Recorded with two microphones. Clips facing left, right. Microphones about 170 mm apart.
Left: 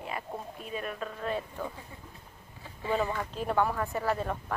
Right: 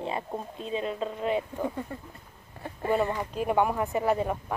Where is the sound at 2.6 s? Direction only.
60° right (ahead or behind).